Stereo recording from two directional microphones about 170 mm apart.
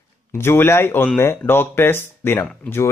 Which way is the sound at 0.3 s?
15° left (ahead or behind).